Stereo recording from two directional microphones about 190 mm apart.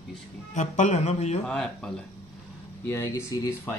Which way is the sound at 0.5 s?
40° left (ahead or behind).